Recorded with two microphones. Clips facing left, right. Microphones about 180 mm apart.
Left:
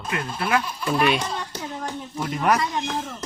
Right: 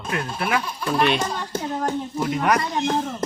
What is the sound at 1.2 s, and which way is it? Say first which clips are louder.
Speech: right 3 dB; 50° right (ahead or behind).